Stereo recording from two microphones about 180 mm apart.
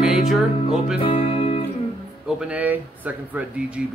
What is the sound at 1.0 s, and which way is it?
Music, 30° left (ahead or behind).